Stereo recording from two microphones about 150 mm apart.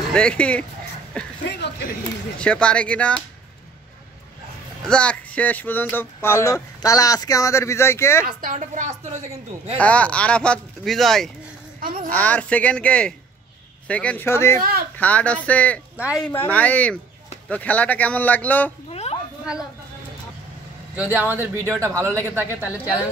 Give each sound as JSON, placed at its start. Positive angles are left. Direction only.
{"t": 0.1, "sound": "speech", "side_deg": 5}
{"t": 2.3, "sound": "speech", "side_deg": 5}
{"t": 4.8, "sound": "speech", "side_deg": 5}
{"t": 8.3, "sound": "a woman's voice", "side_deg": -70}
{"t": 9.8, "sound": "speech", "side_deg": 10}
{"t": 11.8, "sound": "a child's voice", "side_deg": -70}
{"t": 12.1, "sound": "speech", "side_deg": 10}
{"t": 14.6, "sound": "speech", "side_deg": -90}
{"t": 15.0, "sound": "speech", "side_deg": 10}
{"t": 16.0, "sound": "speech", "side_deg": -5}
{"t": 16.3, "sound": "speech", "side_deg": 10}
{"t": 18.9, "sound": "a sound", "side_deg": 45}
{"t": 20.9, "sound": "speech", "side_deg": -10}